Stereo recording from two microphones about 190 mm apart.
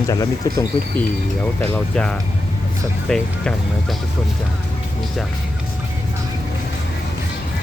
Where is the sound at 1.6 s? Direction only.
5° left (ahead or behind).